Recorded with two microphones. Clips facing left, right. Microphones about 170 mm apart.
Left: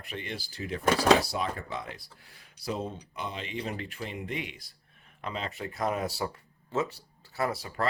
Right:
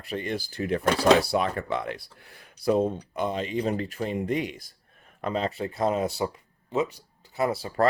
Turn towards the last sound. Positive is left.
turn(degrees=-30)  # may be behind; listen again after turning